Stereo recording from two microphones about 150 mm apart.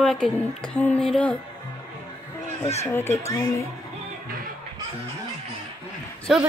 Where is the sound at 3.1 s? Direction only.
20° left (ahead or behind).